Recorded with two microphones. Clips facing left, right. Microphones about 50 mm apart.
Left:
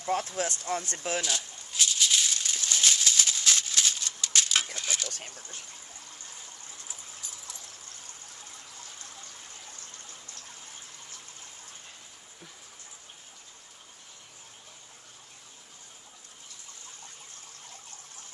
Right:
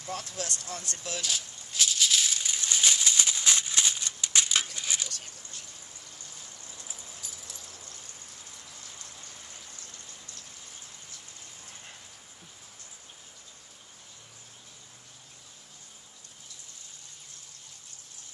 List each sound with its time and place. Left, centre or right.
0.0 s speech: left
1.2 s rattle: centre
4.7 s a sound: centre
5.1 s vehicle: left